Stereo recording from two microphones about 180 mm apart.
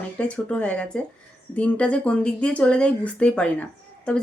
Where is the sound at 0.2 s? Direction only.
5° left (ahead or behind).